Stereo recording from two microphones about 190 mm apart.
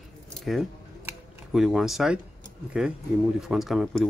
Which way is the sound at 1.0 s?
5° right (ahead or behind).